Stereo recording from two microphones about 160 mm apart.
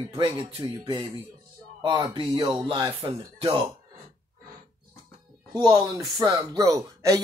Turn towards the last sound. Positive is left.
turn(degrees=-20)  # may be behind; listen again after turning